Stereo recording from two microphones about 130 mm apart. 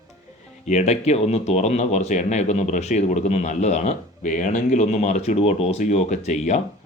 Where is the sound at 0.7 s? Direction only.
60° left (ahead or behind).